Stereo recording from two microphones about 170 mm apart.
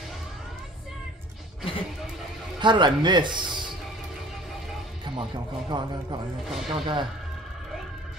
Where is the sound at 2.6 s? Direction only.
25° right (ahead or behind).